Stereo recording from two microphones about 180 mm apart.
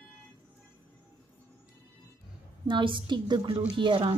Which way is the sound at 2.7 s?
25° right (ahead or behind).